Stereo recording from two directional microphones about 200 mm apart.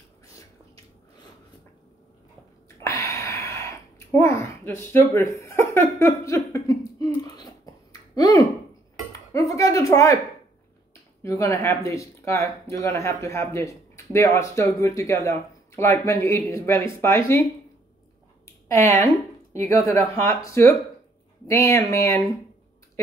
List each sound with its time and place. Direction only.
2.8 s a sound: 15° left (ahead or behind)
9.3 s a woman's voice: 15° left (ahead or behind)
11.2 s speech: 15° left (ahead or behind)
18.7 s speech: 15° left (ahead or behind)